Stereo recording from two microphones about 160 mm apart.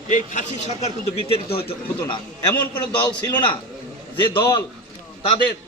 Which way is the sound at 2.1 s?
30° left (ahead or behind).